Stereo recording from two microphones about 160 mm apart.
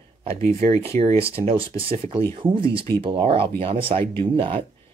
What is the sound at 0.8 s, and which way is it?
Speech, 40° right (ahead or behind).